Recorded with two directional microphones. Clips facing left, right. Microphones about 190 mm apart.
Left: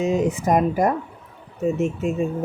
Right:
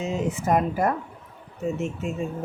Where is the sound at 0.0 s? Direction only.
15° left (ahead or behind).